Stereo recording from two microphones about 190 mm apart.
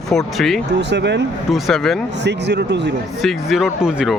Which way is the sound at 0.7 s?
65° right (ahead or behind).